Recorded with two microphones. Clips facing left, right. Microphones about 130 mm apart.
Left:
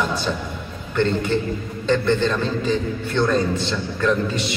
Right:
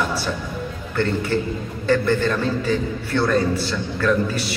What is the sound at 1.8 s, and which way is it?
A man's voice, 20° left (ahead or behind).